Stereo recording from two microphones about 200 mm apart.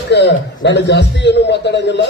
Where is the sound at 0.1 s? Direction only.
60° left (ahead or behind).